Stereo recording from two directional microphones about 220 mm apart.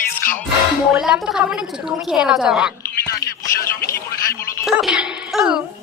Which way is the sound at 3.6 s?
10° left (ahead or behind).